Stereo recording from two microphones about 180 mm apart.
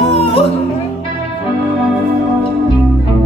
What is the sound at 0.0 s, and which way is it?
Music, 30° left (ahead or behind).